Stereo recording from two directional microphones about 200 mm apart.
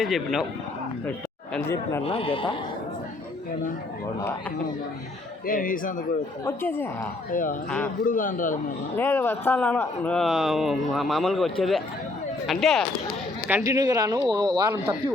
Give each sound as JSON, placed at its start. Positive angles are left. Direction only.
{"t": 0.0, "sound": "speech", "side_deg": 0}
{"t": 2.0, "sound": "speech", "side_deg": 25}
{"t": 5.5, "sound": "speech", "side_deg": 45}
{"t": 6.4, "sound": "speech", "side_deg": 10}
{"t": 7.3, "sound": "a man's voice", "side_deg": 40}
{"t": 9.0, "sound": "speech", "side_deg": 10}
{"t": 13.7, "sound": "speech", "side_deg": -20}